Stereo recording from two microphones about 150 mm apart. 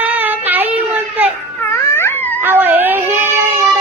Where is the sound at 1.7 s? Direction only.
15° left (ahead or behind).